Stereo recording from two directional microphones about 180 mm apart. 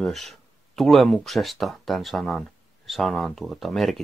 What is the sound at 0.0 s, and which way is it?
Speech, centre (ahead or behind).